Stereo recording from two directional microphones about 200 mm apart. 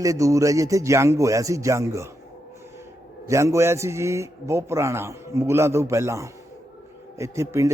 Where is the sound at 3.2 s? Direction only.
15° right (ahead or behind).